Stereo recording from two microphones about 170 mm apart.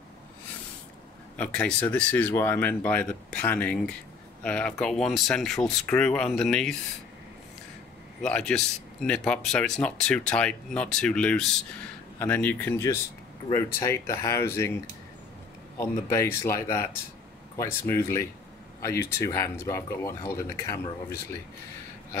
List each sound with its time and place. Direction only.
1.3 s speech: 5° left (ahead or behind)
8.2 s speech: 5° left (ahead or behind)
15.8 s speech: 15° left (ahead or behind)